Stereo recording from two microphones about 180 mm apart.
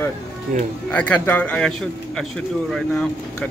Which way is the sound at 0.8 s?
10° left (ahead or behind).